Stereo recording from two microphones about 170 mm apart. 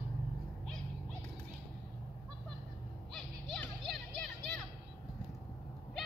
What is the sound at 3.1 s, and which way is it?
Vehicle, centre (ahead or behind).